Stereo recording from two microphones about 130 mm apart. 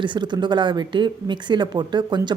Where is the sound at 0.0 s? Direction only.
35° right (ahead or behind).